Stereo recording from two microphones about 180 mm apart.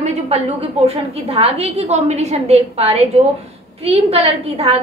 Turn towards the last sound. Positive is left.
turn(degrees=-35)  # may be behind; listen again after turning